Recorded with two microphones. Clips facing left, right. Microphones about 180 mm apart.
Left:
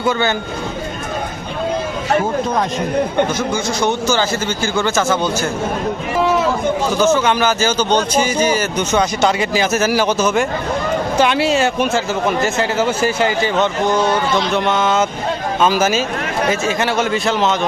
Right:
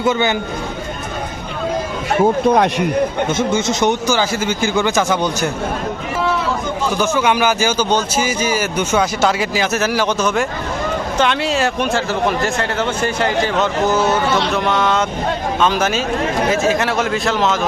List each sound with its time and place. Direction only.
0.0 s speech: 20° right (ahead or behind)
2.5 s a man's voice: 65° right (ahead or behind)
3.2 s a man's voice: 25° right (ahead or behind)
7.0 s a man's voice: 10° right (ahead or behind)